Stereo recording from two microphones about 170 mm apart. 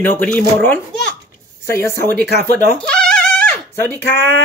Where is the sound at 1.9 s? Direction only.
70° right (ahead or behind).